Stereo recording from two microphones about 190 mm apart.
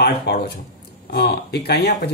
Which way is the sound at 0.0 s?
60° left (ahead or behind).